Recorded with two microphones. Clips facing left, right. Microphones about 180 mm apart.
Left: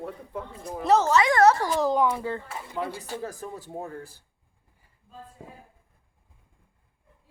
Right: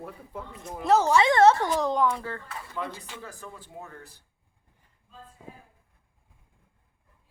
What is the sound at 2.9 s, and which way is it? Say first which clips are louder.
Speech: left 8 dB; 40° left (ahead or behind).